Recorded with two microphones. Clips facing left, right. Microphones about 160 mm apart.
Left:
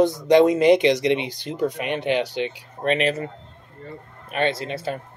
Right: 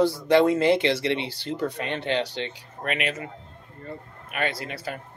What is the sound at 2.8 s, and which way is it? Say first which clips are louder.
A man's voice: left 7 dB; 35° left (ahead or behind).